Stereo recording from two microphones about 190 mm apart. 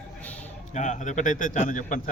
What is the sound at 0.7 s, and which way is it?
A man's voice, 40° left (ahead or behind).